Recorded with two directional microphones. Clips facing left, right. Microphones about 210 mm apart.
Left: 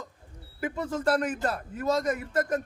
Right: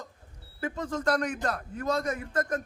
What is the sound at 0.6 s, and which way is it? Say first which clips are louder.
A man's voice: left 1 dB; 10° left (ahead or behind).